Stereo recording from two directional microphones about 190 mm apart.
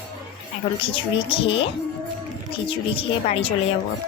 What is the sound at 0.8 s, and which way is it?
A woman's voice, 25° left (ahead or behind).